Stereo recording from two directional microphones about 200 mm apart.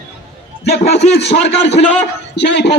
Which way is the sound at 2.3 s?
60° left (ahead or behind).